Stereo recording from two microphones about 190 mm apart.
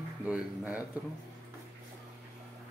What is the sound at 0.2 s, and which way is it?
Speech, 10° right (ahead or behind).